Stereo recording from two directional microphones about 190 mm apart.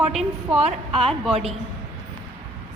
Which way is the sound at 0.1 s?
Centre (ahead or behind).